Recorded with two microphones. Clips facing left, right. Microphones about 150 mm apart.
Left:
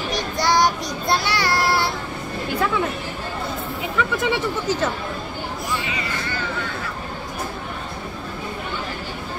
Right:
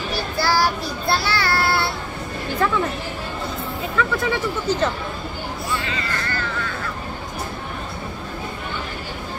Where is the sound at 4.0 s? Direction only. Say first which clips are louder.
Even; 15° left (ahead or behind).